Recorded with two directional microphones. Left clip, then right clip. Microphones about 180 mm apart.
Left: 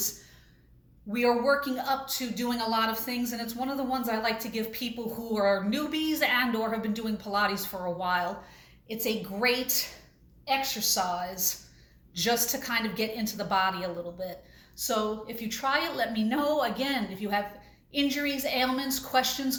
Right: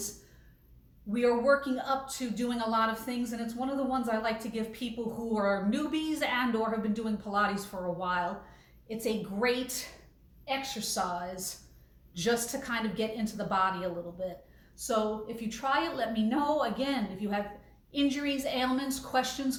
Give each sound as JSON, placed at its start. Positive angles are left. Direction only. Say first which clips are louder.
{"t": 1.1, "sound": "a woman's voice", "louder": "left 1 dB", "side_deg": -15}